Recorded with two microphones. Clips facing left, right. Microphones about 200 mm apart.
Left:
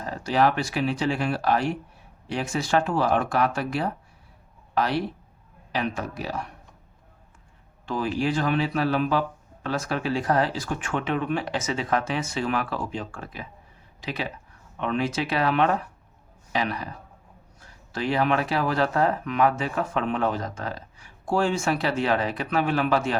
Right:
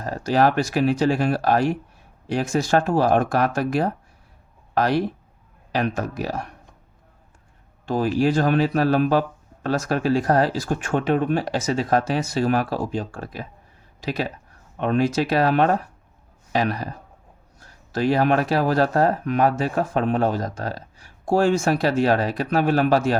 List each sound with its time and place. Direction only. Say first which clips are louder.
0.0 s speech: right 3 dB; 40° right (ahead or behind)
7.9 s speech: right 5 dB; 40° right (ahead or behind)